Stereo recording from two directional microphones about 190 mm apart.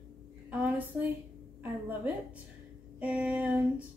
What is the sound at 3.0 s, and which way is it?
Female singing, 10° right (ahead or behind).